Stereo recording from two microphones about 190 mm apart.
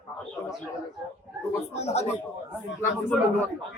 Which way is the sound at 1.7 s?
35° left (ahead or behind).